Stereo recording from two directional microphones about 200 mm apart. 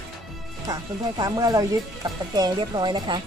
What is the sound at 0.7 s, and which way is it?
Speech, 20° right (ahead or behind).